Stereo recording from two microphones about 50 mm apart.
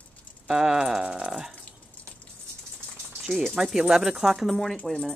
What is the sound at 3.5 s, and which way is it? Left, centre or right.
Speech, centre.